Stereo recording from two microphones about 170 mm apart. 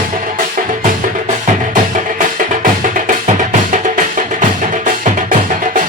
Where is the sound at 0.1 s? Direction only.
50° right (ahead or behind).